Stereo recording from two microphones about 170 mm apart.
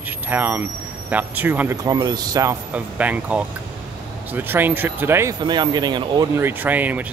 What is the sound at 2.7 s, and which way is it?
Speech, 10° right (ahead or behind).